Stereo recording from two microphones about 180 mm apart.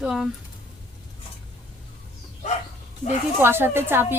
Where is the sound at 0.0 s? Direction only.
Centre (ahead or behind).